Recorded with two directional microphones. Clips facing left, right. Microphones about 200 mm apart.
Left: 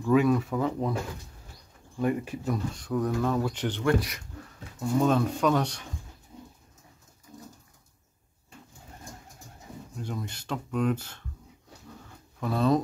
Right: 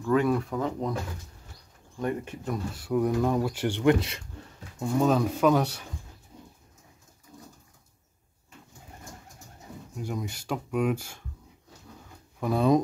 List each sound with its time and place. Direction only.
0.0 s speech: 10° left (ahead or behind)
2.0 s speech: 5° left (ahead or behind)
2.7 s speech: 10° right (ahead or behind)
4.9 s speech: 5° right (ahead or behind)
9.9 s speech: 10° right (ahead or behind)
12.4 s speech: 15° right (ahead or behind)